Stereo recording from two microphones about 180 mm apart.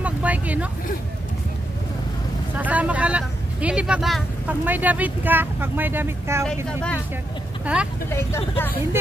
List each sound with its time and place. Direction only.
0.0 s vehicle: 10° right (ahead or behind)
2.5 s speech: 10° right (ahead or behind)
6.4 s a woman's voice: 5° left (ahead or behind)
7.6 s speech: 5° right (ahead or behind)